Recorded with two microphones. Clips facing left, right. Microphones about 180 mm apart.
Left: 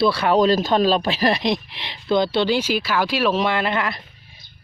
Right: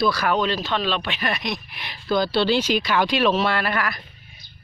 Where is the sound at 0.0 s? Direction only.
30° left (ahead or behind).